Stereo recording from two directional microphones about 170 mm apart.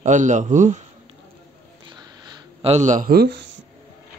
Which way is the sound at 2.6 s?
45° right (ahead or behind).